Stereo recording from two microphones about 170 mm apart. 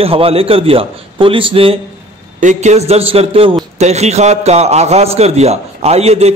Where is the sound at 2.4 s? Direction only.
45° right (ahead or behind).